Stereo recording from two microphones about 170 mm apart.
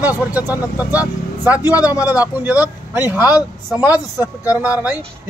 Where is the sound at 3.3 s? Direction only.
20° left (ahead or behind).